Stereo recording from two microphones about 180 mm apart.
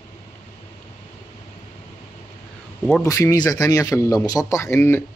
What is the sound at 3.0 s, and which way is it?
Speech, 15° left (ahead or behind).